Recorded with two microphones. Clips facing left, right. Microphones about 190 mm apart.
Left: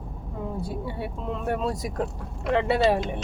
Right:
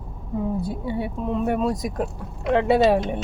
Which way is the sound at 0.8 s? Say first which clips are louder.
Right 5 dB; 20° right (ahead or behind).